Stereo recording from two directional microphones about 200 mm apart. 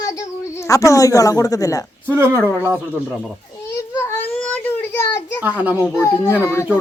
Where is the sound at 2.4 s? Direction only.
5° left (ahead or behind).